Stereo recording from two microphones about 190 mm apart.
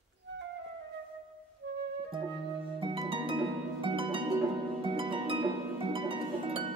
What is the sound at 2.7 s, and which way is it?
Harp, 25° right (ahead or behind).